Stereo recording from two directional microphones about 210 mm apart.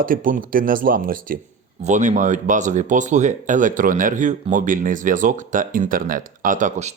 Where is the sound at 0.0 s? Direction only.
40° right (ahead or behind).